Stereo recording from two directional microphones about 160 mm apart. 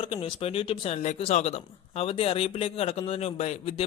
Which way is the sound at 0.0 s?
35° left (ahead or behind).